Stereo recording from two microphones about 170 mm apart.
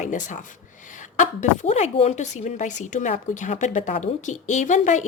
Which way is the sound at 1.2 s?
40° left (ahead or behind).